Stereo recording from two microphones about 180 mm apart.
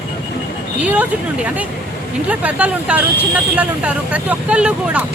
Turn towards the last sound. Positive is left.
turn(degrees=-5)  # may be behind; listen again after turning